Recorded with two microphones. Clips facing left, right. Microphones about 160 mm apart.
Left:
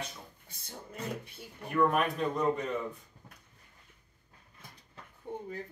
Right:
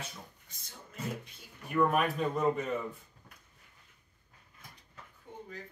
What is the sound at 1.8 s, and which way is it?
Speech, 5° right (ahead or behind).